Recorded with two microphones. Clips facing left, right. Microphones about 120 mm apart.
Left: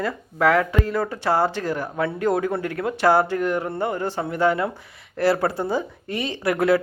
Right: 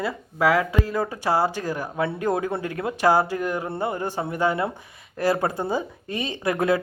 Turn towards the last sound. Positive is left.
turn(degrees=-20)  # may be behind; listen again after turning